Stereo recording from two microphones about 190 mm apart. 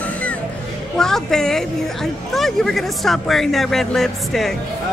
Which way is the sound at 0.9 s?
5° left (ahead or behind).